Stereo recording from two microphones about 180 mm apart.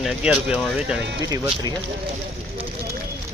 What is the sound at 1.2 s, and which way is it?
Speech, 20° right (ahead or behind).